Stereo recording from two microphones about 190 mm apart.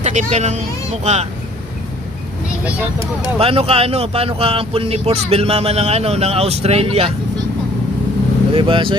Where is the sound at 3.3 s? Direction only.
30° right (ahead or behind).